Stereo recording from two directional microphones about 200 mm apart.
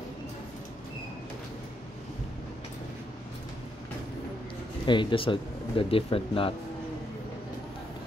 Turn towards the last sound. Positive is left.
turn(degrees=25)  # may be behind; listen again after turning